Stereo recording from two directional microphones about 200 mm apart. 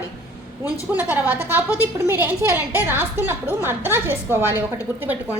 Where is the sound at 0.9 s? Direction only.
10° right (ahead or behind).